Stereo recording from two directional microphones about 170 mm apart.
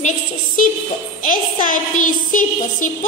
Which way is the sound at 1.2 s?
50° left (ahead or behind).